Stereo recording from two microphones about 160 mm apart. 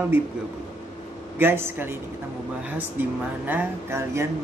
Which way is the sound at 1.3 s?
15° right (ahead or behind).